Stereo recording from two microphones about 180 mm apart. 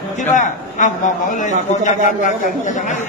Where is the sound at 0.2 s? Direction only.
45° left (ahead or behind).